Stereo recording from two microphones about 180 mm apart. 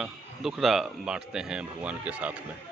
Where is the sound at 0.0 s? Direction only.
Centre (ahead or behind).